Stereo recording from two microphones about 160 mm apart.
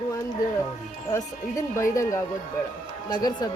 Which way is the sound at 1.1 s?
20° left (ahead or behind).